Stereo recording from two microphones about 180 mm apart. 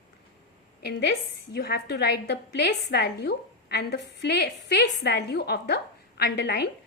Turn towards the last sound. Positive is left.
turn(degrees=65)  # may be behind; listen again after turning